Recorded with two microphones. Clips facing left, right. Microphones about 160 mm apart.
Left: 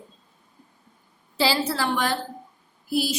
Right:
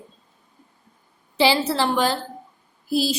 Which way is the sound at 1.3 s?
20° right (ahead or behind).